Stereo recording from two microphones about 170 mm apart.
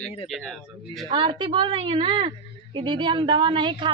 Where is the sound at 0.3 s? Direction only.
Centre (ahead or behind).